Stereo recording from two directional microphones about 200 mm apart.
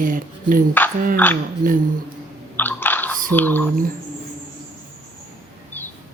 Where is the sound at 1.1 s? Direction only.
10° left (ahead or behind).